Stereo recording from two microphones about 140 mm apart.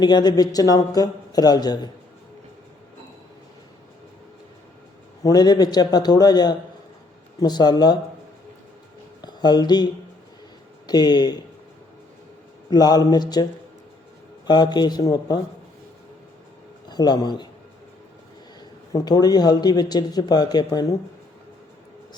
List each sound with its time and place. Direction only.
0.0 s a man's voice: 30° left (ahead or behind)
5.2 s a man's voice: 30° left (ahead or behind)
9.2 s a man's voice: 30° left (ahead or behind)
12.7 s a man's voice: 30° left (ahead or behind)
16.9 s a man's voice: 30° left (ahead or behind)
18.9 s a man's voice: 30° left (ahead or behind)